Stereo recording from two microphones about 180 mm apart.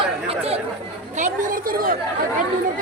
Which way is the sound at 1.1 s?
45° right (ahead or behind).